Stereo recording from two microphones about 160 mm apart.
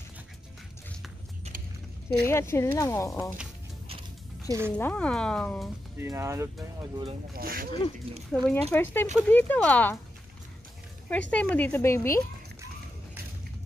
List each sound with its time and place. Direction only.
2.2 s speech: 15° left (ahead or behind)
4.5 s speech: 15° right (ahead or behind)
4.7 s speech: 10° left (ahead or behind)
5.9 s speech: 15° right (ahead or behind)
7.3 s speech: 65° right (ahead or behind)
8.3 s speech: 10° left (ahead or behind)
11.1 s speech: 10° left (ahead or behind)